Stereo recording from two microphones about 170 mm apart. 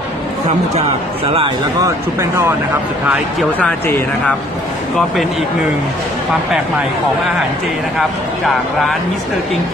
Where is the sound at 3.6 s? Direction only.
10° left (ahead or behind).